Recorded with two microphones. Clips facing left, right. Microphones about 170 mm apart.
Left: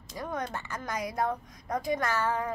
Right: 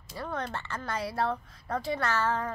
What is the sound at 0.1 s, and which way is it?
A child's voice, 15° left (ahead or behind).